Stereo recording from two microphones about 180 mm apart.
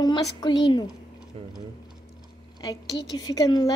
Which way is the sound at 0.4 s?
25° left (ahead or behind).